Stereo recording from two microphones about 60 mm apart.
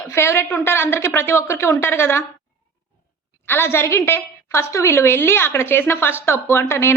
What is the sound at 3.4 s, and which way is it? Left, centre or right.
A woman's voice, left.